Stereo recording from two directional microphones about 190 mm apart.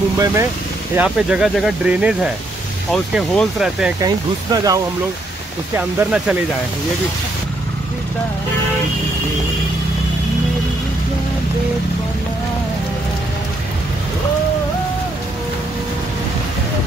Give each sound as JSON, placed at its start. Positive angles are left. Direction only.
{"t": 0.2, "sound": "speech", "side_deg": -15}
{"t": 4.0, "sound": "speech", "side_deg": -20}
{"t": 5.8, "sound": "speech", "side_deg": -5}